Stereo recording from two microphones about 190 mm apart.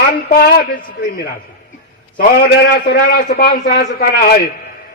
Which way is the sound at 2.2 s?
50° left (ahead or behind).